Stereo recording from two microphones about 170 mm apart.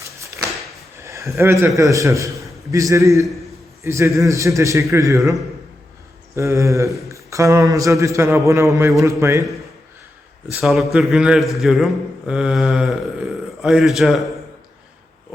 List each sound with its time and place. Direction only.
1.0 s a sound: 15° right (ahead or behind)
1.4 s speech: 15° right (ahead or behind)
10.5 s speech: centre (ahead or behind)